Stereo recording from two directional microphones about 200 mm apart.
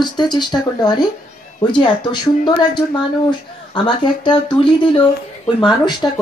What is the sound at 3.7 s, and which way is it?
Speech, 25° left (ahead or behind).